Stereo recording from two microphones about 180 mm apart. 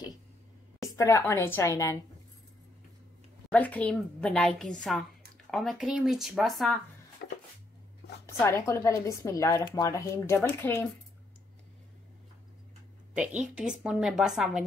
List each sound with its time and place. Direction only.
0.9 s a woman's voice: 15° left (ahead or behind)
3.4 s a woman's voice: 10° left (ahead or behind)
7.2 s a sound: 65° left (ahead or behind)
8.4 s a woman's voice: 15° left (ahead or behind)
13.4 s a woman's voice: 5° right (ahead or behind)